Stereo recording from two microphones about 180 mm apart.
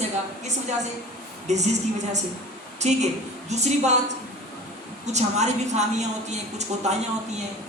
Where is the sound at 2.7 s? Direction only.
40° right (ahead or behind).